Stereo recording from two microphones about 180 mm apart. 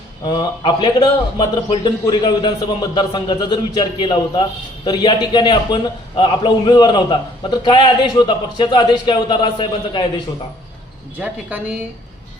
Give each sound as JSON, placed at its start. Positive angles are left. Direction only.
{"t": 0.3, "sound": "a man's voice", "side_deg": 25}
{"t": 11.2, "sound": "a woman's voice", "side_deg": -5}